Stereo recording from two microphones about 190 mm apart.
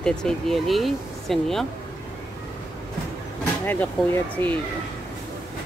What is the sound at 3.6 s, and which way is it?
Speech, 10° left (ahead or behind).